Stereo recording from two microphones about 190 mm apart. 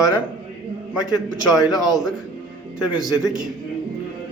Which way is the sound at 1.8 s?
Centre (ahead or behind).